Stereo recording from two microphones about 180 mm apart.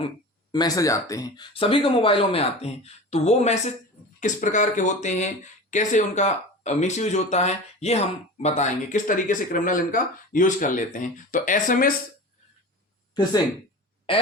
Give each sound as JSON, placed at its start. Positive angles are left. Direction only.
{"t": 0.5, "sound": "speech", "side_deg": 20}